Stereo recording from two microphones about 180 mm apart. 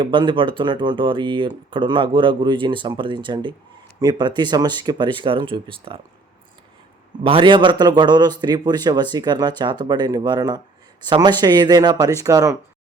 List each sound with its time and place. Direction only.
0.0 s speech: 25° right (ahead or behind)
7.3 s speech: 30° right (ahead or behind)